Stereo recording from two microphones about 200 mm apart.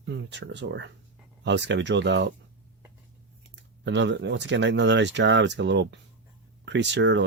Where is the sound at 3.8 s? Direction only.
65° right (ahead or behind).